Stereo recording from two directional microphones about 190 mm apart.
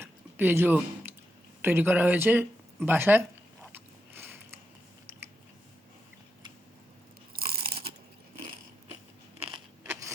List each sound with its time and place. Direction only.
0.0 s a sound: 10° right (ahead or behind)
1.6 s speech: 10° right (ahead or behind)
3.7 s biting: 10° right (ahead or behind)
7.3 s crunch: 50° right (ahead or behind)